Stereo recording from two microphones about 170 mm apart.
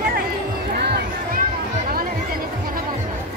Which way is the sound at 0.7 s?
70° right (ahead or behind).